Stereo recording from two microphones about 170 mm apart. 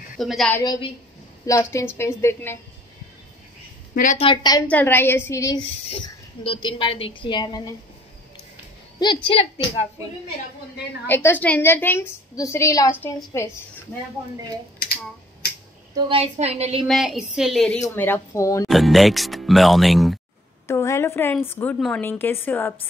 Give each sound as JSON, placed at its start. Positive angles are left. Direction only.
{"t": 0.2, "sound": "speech", "side_deg": 0}
{"t": 0.6, "sound": "a woman's voice", "side_deg": 25}
{"t": 4.2, "sound": "a woman's voice", "side_deg": 30}
{"t": 4.6, "sound": "a woman's voice", "side_deg": 10}
{"t": 5.6, "sound": "a woman's voice", "side_deg": 30}
{"t": 9.0, "sound": "a woman's voice", "side_deg": 30}
{"t": 11.1, "sound": "a woman's voice", "side_deg": 10}
{"t": 16.1, "sound": "a woman's voice", "side_deg": -35}
{"t": 16.8, "sound": "speech", "side_deg": 0}
{"t": 17.8, "sound": "a woman's voice", "side_deg": 10}
{"t": 18.7, "sound": "speech", "side_deg": 0}
{"t": 20.6, "sound": "a woman's voice", "side_deg": 15}
{"t": 21.7, "sound": "speech", "side_deg": 0}
{"t": 22.1, "sound": "a woman's voice", "side_deg": 10}